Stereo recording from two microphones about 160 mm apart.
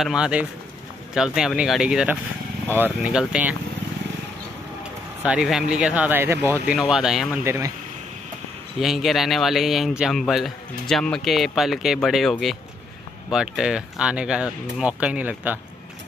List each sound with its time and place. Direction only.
0.0 s speech: 5° right (ahead or behind)
5.2 s speech: 5° right (ahead or behind)
6.7 s speech: 5° right (ahead or behind)
7.4 s speech: 20° right (ahead or behind)
8.7 s speech: centre (ahead or behind)